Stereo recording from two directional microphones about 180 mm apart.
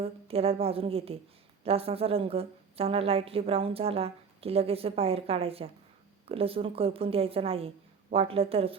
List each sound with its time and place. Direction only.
0.0 s a woman's voice: 35° right (ahead or behind)